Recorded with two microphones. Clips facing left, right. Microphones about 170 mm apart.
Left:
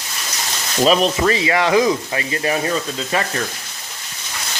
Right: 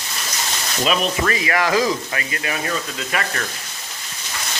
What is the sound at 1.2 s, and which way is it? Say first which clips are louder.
Speech: left 3 dB; 25° left (ahead or behind).